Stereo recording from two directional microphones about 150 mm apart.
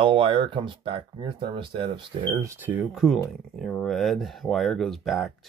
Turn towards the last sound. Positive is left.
turn(degrees=0)  # may be behind; listen again after turning